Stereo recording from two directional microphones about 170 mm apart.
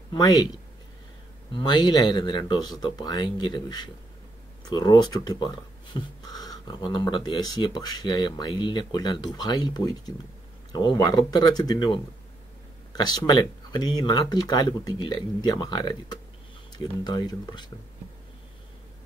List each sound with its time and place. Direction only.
0.1 s speech: 25° left (ahead or behind)